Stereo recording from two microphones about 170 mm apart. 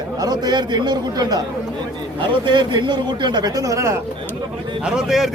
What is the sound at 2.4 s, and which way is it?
A man's voice, 25° right (ahead or behind).